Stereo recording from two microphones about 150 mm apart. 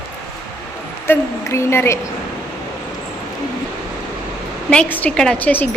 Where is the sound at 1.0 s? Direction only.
15° left (ahead or behind).